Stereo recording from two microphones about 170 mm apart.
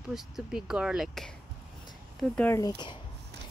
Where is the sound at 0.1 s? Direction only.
5° right (ahead or behind).